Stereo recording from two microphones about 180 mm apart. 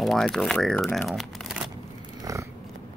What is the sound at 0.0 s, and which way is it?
Speech, centre (ahead or behind).